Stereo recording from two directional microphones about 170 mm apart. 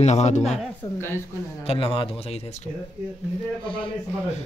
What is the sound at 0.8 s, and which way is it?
Speech, 15° left (ahead or behind).